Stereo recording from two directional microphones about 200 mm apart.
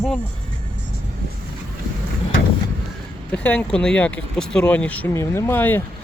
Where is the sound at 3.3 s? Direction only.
5° left (ahead or behind).